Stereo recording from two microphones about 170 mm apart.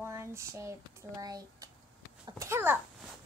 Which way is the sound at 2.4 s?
15° right (ahead or behind).